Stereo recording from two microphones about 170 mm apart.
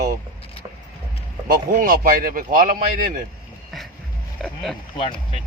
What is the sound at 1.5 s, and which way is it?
Speech, 55° right (ahead or behind).